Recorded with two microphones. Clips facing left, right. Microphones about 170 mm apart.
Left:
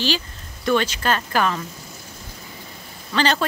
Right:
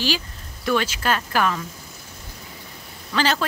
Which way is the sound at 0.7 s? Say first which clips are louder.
Left 2 dB; 5° right (ahead or behind).